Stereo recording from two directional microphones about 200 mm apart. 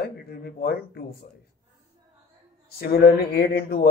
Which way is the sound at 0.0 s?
50° left (ahead or behind).